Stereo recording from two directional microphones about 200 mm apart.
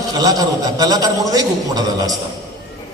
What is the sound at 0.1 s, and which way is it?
A man's voice, 20° right (ahead or behind).